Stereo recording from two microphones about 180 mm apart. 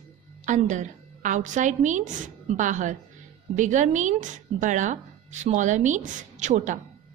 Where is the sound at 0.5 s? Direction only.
45° right (ahead or behind).